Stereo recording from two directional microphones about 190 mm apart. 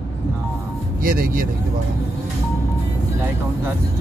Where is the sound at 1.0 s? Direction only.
50° right (ahead or behind).